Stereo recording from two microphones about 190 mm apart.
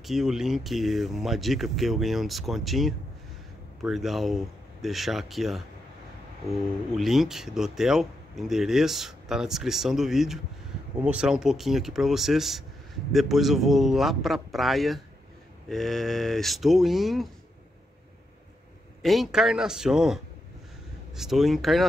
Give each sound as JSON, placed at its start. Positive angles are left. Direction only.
{"t": 0.0, "sound": "speech", "side_deg": 0}
{"t": 19.0, "sound": "speech", "side_deg": 0}